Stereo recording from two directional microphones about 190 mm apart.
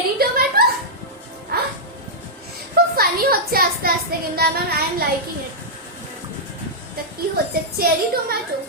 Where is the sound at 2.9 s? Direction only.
55° right (ahead or behind).